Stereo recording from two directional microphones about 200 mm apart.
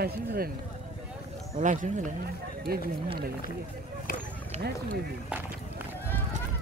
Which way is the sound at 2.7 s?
50° right (ahead or behind).